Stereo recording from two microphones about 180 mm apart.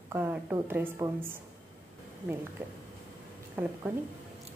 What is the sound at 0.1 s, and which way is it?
A woman's voice, 10° right (ahead or behind).